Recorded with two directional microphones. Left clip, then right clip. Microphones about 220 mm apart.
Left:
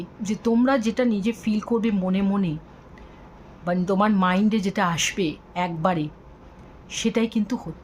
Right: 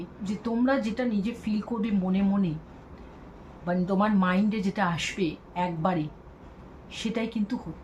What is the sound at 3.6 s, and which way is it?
Speech, 55° left (ahead or behind).